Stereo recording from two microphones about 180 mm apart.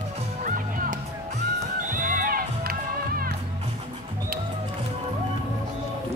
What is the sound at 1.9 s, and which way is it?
Music, 50° right (ahead or behind).